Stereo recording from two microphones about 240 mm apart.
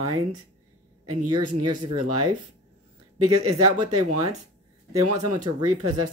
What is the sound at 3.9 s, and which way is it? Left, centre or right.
Speech, right.